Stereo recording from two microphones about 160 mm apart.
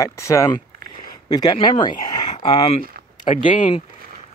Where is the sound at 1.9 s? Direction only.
45° left (ahead or behind).